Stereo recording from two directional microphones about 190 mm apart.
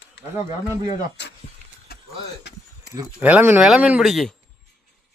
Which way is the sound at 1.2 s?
65° left (ahead or behind).